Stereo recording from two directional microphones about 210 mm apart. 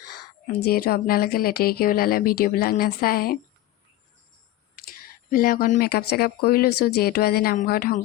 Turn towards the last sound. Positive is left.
turn(degrees=45)  # may be behind; listen again after turning